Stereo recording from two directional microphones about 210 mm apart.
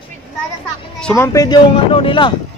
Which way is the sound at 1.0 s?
5° left (ahead or behind).